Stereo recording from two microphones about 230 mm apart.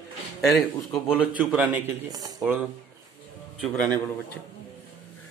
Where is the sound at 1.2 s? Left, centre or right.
Centre.